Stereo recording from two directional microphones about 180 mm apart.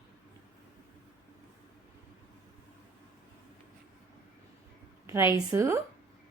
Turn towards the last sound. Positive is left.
turn(degrees=-15)  # may be behind; listen again after turning